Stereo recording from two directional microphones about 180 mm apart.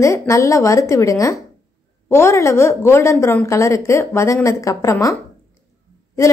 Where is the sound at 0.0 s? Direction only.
15° left (ahead or behind).